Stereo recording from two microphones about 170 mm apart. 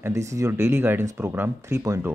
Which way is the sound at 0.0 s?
15° right (ahead or behind).